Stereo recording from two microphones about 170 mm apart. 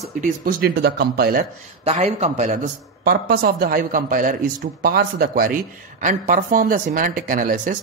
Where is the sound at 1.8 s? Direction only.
40° right (ahead or behind).